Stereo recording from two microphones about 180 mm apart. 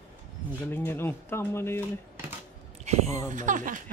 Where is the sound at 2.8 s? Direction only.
35° right (ahead or behind).